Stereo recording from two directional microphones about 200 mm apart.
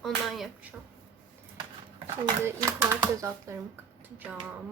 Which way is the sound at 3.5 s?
15° right (ahead or behind).